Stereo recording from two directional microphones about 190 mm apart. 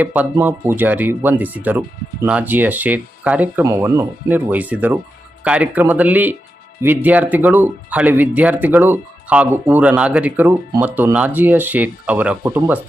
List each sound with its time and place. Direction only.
0.0 s speech: 10° right (ahead or behind)